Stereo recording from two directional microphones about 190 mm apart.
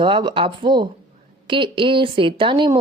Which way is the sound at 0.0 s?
25° right (ahead or behind).